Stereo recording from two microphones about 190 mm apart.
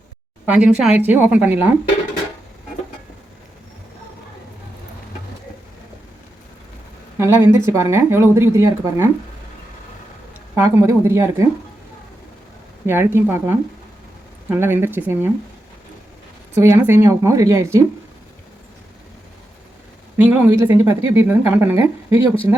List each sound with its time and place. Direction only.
0.4 s speech: 5° right (ahead or behind)
7.2 s speech: 10° right (ahead or behind)
10.5 s speech: 15° right (ahead or behind)
12.8 s speech: 10° right (ahead or behind)
16.6 s speech: 15° right (ahead or behind)
20.2 s speech: 10° right (ahead or behind)